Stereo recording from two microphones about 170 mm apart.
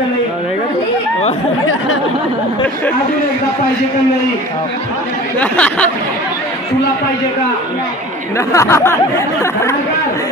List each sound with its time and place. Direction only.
5.4 s speech: 5° left (ahead or behind)
8.4 s speech: 15° left (ahead or behind)